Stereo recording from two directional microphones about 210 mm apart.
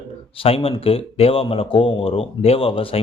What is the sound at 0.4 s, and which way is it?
A man's voice, 25° left (ahead or behind).